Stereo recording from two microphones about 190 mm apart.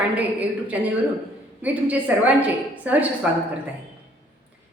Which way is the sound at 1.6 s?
10° right (ahead or behind).